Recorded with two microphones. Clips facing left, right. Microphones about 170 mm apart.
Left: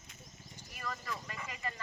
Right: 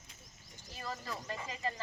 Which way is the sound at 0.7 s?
30° right (ahead or behind).